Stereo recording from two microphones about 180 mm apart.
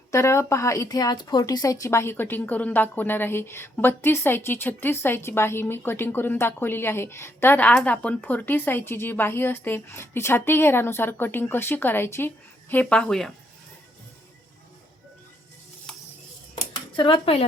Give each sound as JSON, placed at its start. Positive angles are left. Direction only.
{"t": 0.1, "sound": "a woman's voice", "side_deg": 15}
{"t": 16.9, "sound": "speech", "side_deg": 30}